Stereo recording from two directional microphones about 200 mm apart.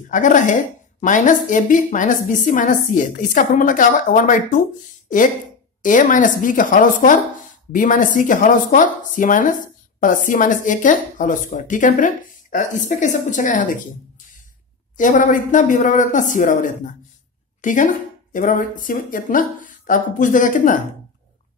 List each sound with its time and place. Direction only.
0.1 s speech: 40° left (ahead or behind)
5.8 s speech: 40° left (ahead or behind)
15.0 s a woman's voice: 40° left (ahead or behind)